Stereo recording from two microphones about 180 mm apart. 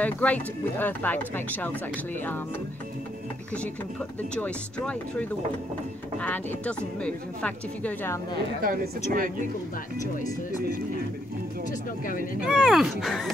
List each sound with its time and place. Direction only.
0.0 s speech: 10° left (ahead or behind)
4.4 s speech: 5° left (ahead or behind)
6.2 s speech: 10° left (ahead or behind)
8.6 s speech: 50° right (ahead or behind)
12.4 s speech: 5° right (ahead or behind)